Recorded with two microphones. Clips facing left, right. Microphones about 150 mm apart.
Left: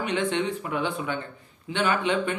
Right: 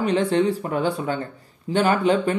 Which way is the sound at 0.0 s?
35° right (ahead or behind).